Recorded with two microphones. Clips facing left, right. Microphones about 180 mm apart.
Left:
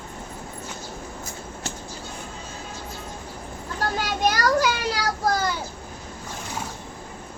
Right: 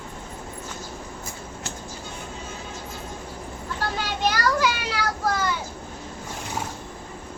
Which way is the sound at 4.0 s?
40° left (ahead or behind).